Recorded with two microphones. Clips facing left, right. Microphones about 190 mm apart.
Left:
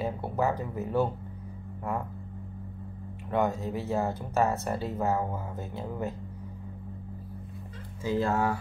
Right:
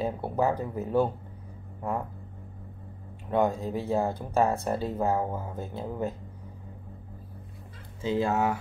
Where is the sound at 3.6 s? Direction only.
30° right (ahead or behind).